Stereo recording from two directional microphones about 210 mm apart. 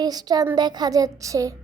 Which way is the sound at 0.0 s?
20° right (ahead or behind).